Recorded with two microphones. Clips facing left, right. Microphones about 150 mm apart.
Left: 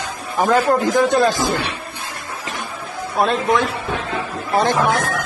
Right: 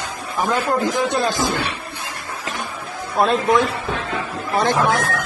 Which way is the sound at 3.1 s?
Centre (ahead or behind).